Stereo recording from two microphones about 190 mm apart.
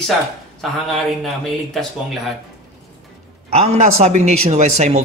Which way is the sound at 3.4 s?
35° right (ahead or behind).